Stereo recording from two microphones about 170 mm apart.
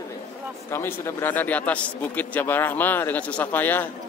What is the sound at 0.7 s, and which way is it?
A man's voice, 15° left (ahead or behind).